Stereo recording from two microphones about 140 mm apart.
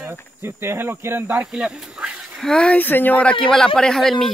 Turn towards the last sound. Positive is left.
turn(degrees=5)  # may be behind; listen again after turning